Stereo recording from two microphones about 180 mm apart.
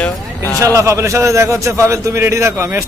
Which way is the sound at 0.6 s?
15° right (ahead or behind).